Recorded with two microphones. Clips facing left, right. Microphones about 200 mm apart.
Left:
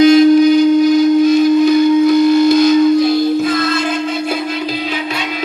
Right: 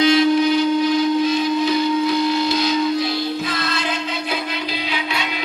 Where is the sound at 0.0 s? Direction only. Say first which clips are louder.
Left 8 dB; 45° left (ahead or behind).